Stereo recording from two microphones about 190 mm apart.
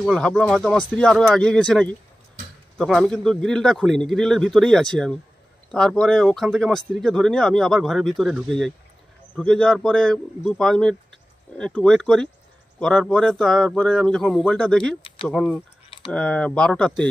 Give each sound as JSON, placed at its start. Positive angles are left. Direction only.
{"t": 0.0, "sound": "speech", "side_deg": 5}
{"t": 15.0, "sound": "a sound", "side_deg": 30}
{"t": 15.2, "sound": "speech", "side_deg": 0}